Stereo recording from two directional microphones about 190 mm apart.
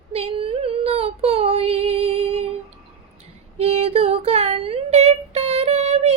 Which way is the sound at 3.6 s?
30° right (ahead or behind).